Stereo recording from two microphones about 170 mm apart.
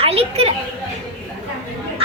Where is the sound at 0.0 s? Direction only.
35° right (ahead or behind).